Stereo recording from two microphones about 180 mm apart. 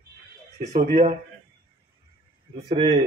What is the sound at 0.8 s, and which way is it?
Speech, 45° right (ahead or behind).